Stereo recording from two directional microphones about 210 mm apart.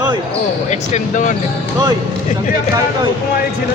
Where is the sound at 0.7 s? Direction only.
35° left (ahead or behind).